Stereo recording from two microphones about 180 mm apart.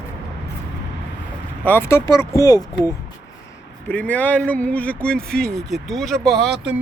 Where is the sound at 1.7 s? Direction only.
15° left (ahead or behind).